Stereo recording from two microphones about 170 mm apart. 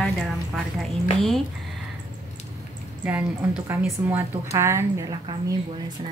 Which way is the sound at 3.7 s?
10° right (ahead or behind).